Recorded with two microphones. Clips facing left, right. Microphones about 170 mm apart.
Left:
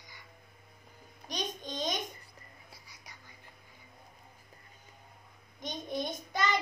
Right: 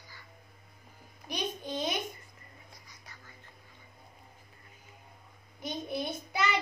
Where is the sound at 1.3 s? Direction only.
10° right (ahead or behind).